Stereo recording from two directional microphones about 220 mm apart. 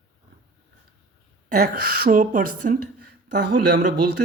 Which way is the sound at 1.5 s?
40° right (ahead or behind).